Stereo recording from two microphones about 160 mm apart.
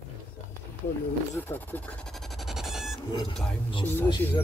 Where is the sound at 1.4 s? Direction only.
10° left (ahead or behind).